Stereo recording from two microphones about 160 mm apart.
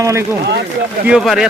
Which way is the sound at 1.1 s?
5° right (ahead or behind).